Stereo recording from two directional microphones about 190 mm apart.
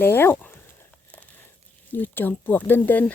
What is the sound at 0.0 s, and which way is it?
Speech, 10° left (ahead or behind).